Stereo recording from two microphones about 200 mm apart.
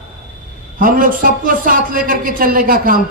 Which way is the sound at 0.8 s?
45° right (ahead or behind).